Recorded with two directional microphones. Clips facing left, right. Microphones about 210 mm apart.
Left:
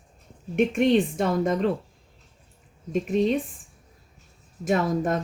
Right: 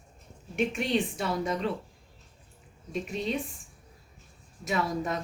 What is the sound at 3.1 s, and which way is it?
Speech, 45° left (ahead or behind).